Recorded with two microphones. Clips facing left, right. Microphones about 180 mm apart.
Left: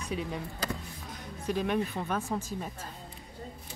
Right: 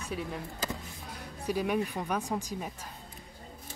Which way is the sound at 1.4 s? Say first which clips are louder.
Even; 10° right (ahead or behind).